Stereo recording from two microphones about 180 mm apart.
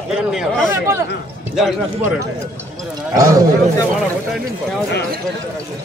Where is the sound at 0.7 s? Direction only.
15° right (ahead or behind).